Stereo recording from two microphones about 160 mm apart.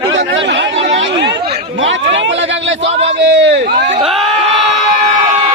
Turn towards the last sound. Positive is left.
turn(degrees=0)  # may be behind; listen again after turning